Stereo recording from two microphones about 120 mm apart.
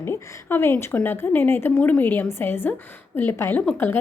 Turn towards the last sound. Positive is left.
turn(degrees=15)  # may be behind; listen again after turning